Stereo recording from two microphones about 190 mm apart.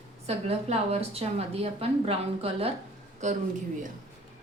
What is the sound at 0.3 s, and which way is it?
A woman's voice, 30° right (ahead or behind).